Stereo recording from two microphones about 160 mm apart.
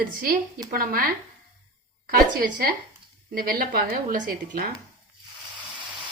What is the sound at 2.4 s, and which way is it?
A woman's voice, 70° right (ahead or behind).